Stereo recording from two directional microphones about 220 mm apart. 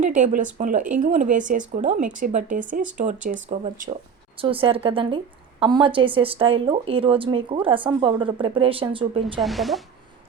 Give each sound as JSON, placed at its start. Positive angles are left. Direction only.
{"t": 0.0, "sound": "speech", "side_deg": -35}
{"t": 4.4, "sound": "a woman's voice", "side_deg": -25}
{"t": 9.4, "sound": "speech", "side_deg": 0}